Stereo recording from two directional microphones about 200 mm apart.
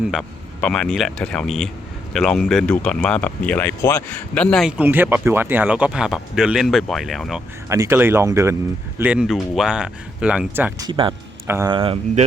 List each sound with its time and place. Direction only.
0.1 s speech: centre (ahead or behind)
4.8 s speech: 10° right (ahead or behind)
7.7 s speech: 15° right (ahead or behind)
10.8 s speech: 25° right (ahead or behind)
11.4 s speech: 10° right (ahead or behind)
11.7 s speech: 25° right (ahead or behind)